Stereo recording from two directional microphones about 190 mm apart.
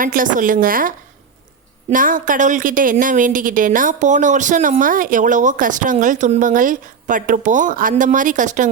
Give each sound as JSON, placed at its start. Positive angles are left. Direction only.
{"t": 0.0, "sound": "a woman's voice", "side_deg": -45}